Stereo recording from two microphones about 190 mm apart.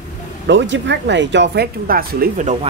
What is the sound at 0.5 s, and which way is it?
Speech, 70° right (ahead or behind).